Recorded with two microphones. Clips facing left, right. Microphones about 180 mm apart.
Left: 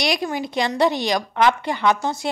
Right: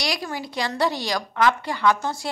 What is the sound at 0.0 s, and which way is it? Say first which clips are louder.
A woman's voice: left 5 dB; 20° left (ahead or behind).